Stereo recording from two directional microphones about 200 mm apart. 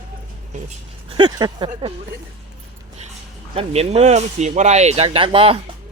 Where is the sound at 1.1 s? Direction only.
20° right (ahead or behind).